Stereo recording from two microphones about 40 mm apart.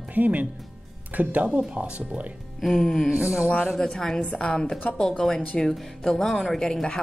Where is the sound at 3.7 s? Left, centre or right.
Centre.